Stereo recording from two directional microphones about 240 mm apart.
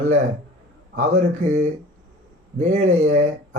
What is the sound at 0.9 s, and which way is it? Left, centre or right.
Speech, right.